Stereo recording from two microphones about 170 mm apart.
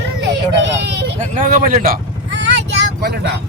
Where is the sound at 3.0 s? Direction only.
75° right (ahead or behind).